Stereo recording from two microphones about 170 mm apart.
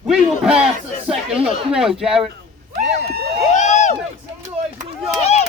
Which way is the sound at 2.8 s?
70° right (ahead or behind).